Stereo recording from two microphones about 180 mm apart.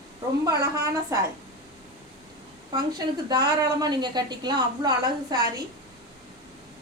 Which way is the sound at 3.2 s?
20° right (ahead or behind).